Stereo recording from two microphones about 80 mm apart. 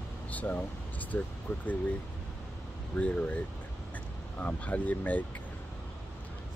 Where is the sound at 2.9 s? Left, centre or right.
Centre.